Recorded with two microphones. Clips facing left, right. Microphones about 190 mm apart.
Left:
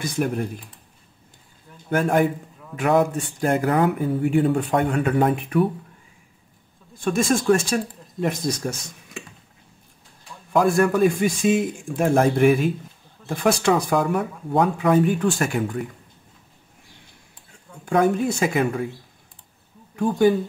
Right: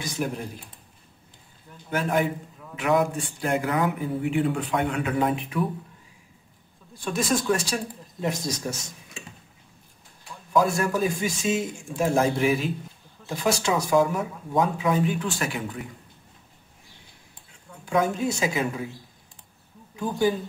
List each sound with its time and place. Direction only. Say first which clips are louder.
1.9 s speech: left 5 dB; 50° left (ahead or behind)
7.0 s speech: left 5 dB; 50° left (ahead or behind)
10.5 s speech: left 4 dB; 55° left (ahead or behind)
17.8 s speech: left 4 dB; 55° left (ahead or behind)
20.0 s speech: left 6 dB; 60° left (ahead or behind)